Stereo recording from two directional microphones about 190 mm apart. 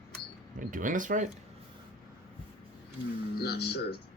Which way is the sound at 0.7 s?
45° right (ahead or behind).